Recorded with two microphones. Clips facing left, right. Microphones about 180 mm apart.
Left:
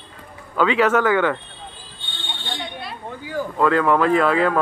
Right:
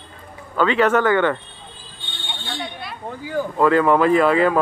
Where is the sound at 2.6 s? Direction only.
Centre (ahead or behind).